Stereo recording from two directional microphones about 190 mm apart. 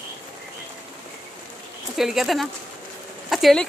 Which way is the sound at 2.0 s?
Centre (ahead or behind).